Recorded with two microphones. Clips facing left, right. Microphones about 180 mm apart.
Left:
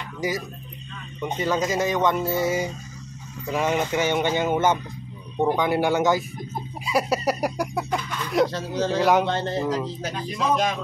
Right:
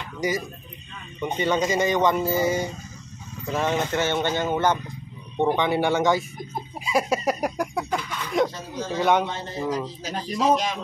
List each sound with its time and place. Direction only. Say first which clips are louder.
0.2 s speech: right 1 dB; centre (ahead or behind)
8.5 s speech: left 6 dB; 75° left (ahead or behind)
8.9 s speech: left 1 dB; centre (ahead or behind)
9.2 s speech: left 4 dB; 75° left (ahead or behind)
10.0 s speech: right 5 dB; 55° left (ahead or behind)